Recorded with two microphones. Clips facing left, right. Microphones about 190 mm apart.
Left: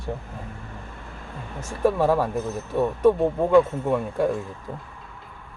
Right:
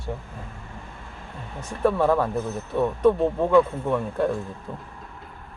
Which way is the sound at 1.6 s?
10° left (ahead or behind).